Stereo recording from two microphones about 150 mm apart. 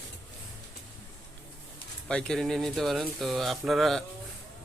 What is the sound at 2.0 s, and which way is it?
Speech, 5° left (ahead or behind).